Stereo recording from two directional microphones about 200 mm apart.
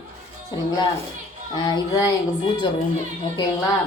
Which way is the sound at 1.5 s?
20° left (ahead or behind).